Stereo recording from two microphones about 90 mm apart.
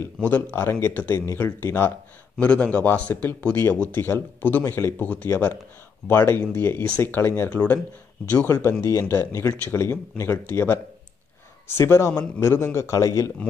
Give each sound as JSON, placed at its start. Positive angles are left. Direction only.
{"t": 0.0, "sound": "speech", "side_deg": 25}
{"t": 2.3, "sound": "speech", "side_deg": 10}